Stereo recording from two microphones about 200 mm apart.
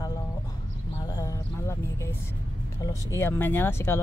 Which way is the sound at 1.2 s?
15° left (ahead or behind).